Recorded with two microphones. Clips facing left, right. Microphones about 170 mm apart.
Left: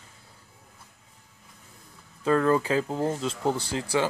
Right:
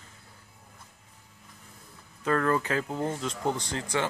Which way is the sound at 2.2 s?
15° left (ahead or behind).